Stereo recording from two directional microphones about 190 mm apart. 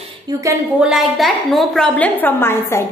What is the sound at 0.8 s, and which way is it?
A woman's voice, centre (ahead or behind).